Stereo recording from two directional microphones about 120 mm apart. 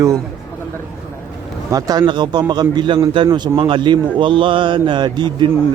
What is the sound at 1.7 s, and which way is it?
Speech, 35° right (ahead or behind).